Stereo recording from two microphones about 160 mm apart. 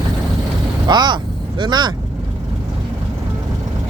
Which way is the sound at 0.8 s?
25° right (ahead or behind).